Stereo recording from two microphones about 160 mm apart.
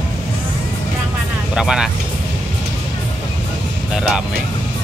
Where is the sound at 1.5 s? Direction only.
5° right (ahead or behind).